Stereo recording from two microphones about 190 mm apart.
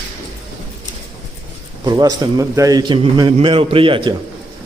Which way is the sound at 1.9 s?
20° right (ahead or behind).